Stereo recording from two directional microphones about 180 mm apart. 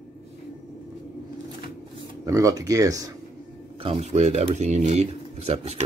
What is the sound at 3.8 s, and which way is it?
Speech, 35° right (ahead or behind).